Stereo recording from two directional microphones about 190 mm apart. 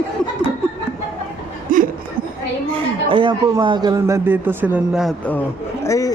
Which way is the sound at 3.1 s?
25° right (ahead or behind).